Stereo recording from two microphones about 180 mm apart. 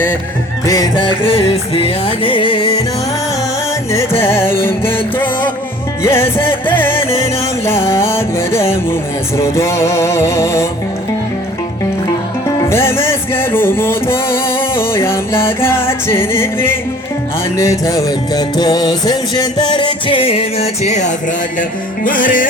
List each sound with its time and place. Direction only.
0.7 s music: 20° left (ahead or behind)
4.2 s music: 15° left (ahead or behind)
12.5 s music: 15° left (ahead or behind); by 22.4 s 50° left (ahead or behind)